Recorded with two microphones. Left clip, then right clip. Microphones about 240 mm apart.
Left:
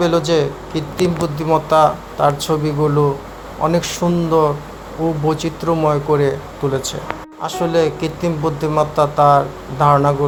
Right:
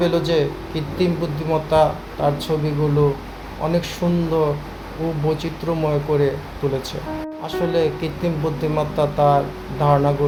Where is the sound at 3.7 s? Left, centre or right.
Centre.